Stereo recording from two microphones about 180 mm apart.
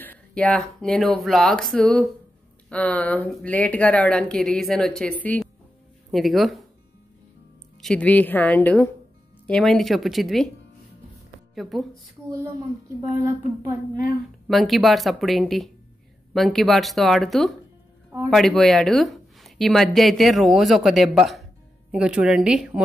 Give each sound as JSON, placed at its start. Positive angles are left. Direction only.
{"t": 0.0, "sound": "speech", "side_deg": 10}
{"t": 7.8, "sound": "speech", "side_deg": 5}
{"t": 11.5, "sound": "speech", "side_deg": 0}
{"t": 13.1, "sound": "a woman's voice", "side_deg": -20}
{"t": 14.5, "sound": "speech", "side_deg": 0}